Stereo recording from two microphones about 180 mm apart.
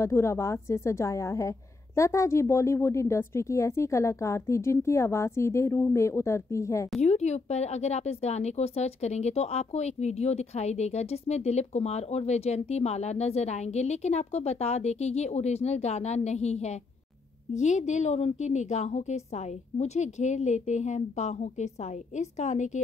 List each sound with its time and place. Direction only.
0.0 s a woman's voice: 15° left (ahead or behind)
7.0 s speech: 35° left (ahead or behind)